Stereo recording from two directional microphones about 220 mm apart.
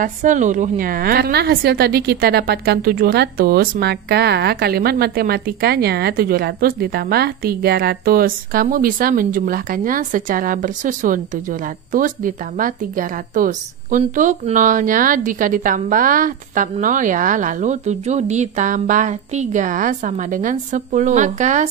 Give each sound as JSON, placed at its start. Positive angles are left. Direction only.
{"t": 0.0, "sound": "a woman's voice", "side_deg": -35}